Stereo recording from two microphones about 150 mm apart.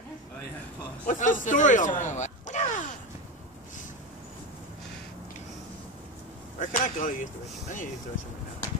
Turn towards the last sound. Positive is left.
turn(degrees=60)  # may be behind; listen again after turning